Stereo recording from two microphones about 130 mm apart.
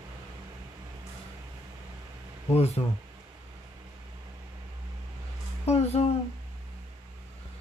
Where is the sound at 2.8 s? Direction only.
40° left (ahead or behind).